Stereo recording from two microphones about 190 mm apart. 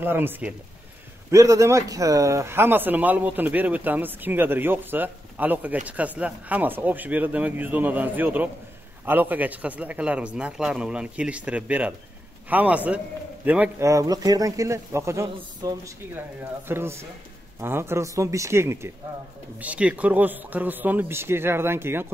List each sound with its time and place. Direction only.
0.0 s speech: 10° right (ahead or behind)